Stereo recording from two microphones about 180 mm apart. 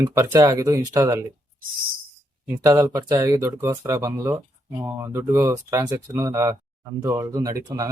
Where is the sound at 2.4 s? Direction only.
15° right (ahead or behind).